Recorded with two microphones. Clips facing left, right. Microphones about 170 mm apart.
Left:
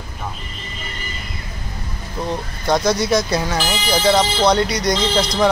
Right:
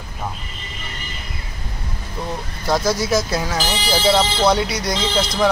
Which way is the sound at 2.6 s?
5° right (ahead or behind).